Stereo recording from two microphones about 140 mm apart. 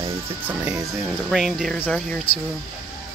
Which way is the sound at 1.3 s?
Centre (ahead or behind).